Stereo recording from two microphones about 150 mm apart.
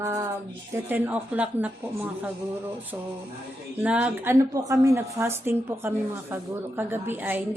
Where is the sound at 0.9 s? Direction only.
15° right (ahead or behind).